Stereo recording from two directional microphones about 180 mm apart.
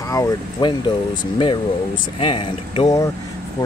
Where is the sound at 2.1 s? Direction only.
30° left (ahead or behind).